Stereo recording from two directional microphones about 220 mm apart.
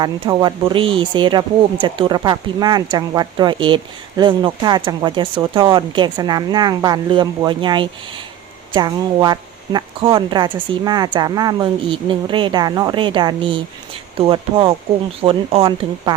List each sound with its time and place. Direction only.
0.0 s speech: 20° right (ahead or behind)